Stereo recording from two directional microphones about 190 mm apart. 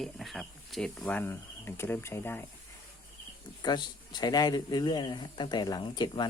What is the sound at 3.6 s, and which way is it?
A man's voice, 20° left (ahead or behind).